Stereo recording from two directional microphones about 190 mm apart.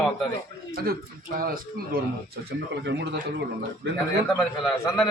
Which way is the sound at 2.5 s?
65° right (ahead or behind).